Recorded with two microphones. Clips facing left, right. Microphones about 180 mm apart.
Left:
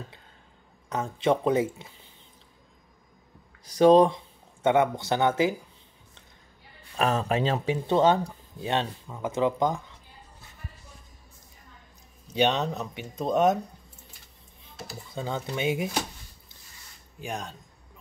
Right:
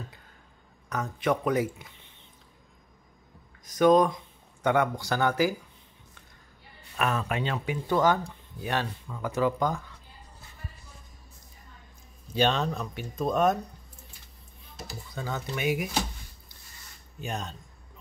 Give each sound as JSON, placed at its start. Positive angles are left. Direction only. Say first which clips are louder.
{"t": 0.8, "sound": "speech", "louder": "left 3 dB", "side_deg": 25}
{"t": 3.6, "sound": "speech", "louder": "left 3 dB", "side_deg": 30}
{"t": 7.0, "sound": "speech", "louder": "left 4 dB", "side_deg": 30}
{"t": 12.3, "sound": "speech", "louder": "left 1 dB", "side_deg": 20}
{"t": 15.1, "sound": "speech", "louder": "left 3 dB", "side_deg": 25}
{"t": 17.2, "sound": "speech", "louder": "even", "side_deg": 10}